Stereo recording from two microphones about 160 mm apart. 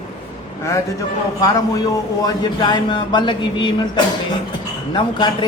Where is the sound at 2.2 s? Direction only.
25° left (ahead or behind).